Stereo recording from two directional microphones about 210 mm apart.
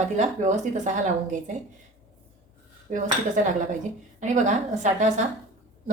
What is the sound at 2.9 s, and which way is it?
Speech, 35° right (ahead or behind).